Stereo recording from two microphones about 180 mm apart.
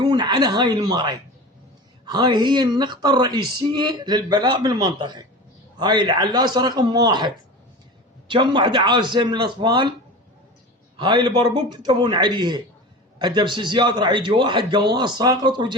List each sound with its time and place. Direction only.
0.0 s speech: 25° right (ahead or behind)
8.3 s speech: 25° right (ahead or behind)
10.9 s speech: 25° right (ahead or behind)